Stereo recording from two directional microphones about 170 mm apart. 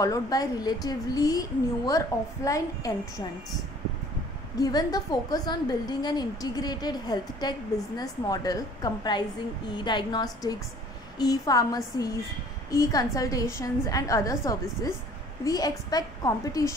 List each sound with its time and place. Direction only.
0.0 s a woman's voice: 20° left (ahead or behind)
4.6 s a woman's voice: 20° left (ahead or behind)